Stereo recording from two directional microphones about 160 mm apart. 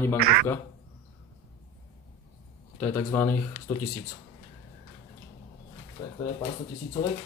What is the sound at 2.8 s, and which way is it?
Speech, 15° left (ahead or behind).